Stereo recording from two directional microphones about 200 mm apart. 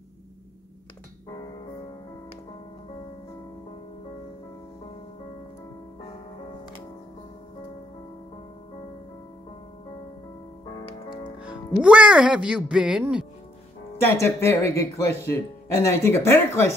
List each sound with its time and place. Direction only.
10.8 s music: 25° left (ahead or behind)
11.4 s speech: 5° right (ahead or behind)
14.0 s speech: 10° left (ahead or behind)